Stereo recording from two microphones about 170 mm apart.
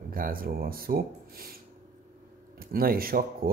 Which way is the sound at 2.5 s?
60° right (ahead or behind).